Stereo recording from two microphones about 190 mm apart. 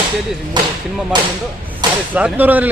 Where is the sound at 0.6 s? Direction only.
25° right (ahead or behind).